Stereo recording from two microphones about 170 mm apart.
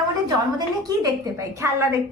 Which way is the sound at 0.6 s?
20° right (ahead or behind).